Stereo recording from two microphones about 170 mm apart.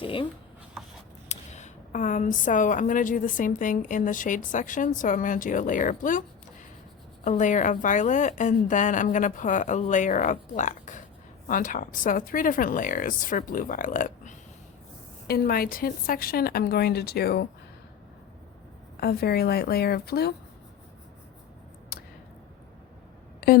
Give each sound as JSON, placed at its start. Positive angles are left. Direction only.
{"t": 0.0, "sound": "a sound", "side_deg": 30}
{"t": 1.3, "sound": "a woman's voice", "side_deg": 40}
{"t": 7.3, "sound": "a woman's voice", "side_deg": 45}
{"t": 15.3, "sound": "a woman's voice", "side_deg": 60}
{"t": 18.9, "sound": "a woman's voice", "side_deg": 65}
{"t": 21.9, "sound": "a sound", "side_deg": 65}